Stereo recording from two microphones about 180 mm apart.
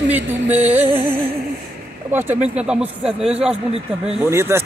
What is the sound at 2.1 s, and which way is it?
Speech, 10° right (ahead or behind).